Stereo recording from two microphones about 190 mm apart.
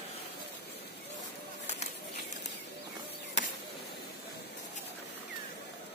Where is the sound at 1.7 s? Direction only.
35° left (ahead or behind).